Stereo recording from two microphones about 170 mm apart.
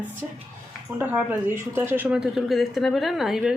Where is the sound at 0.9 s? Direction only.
10° right (ahead or behind).